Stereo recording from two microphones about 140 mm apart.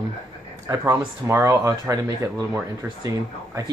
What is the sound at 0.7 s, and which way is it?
Speech, 25° right (ahead or behind).